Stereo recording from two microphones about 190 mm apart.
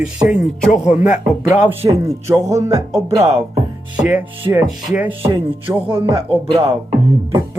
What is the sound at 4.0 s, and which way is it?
Speech, 5° right (ahead or behind).